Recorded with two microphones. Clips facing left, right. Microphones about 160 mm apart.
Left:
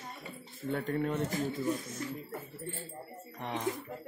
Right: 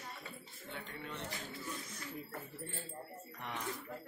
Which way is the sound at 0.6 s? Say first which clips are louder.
Left 15 dB; 45° left (ahead or behind).